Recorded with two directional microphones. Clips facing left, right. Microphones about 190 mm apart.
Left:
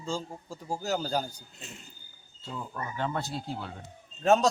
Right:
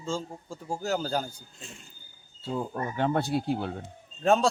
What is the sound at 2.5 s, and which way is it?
Speech, 40° right (ahead or behind).